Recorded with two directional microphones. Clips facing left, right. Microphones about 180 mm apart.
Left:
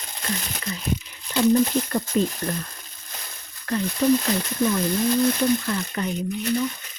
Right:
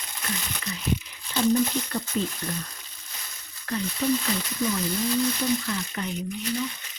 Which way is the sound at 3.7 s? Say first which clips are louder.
Left 6 dB; 55° left (ahead or behind).